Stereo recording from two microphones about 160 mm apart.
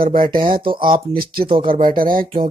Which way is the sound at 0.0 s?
60° right (ahead or behind).